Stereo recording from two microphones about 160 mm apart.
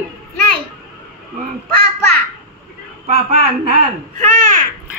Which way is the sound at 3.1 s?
40° right (ahead or behind).